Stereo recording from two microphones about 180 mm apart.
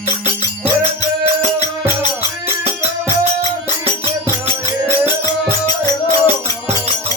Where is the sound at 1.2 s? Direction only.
35° right (ahead or behind).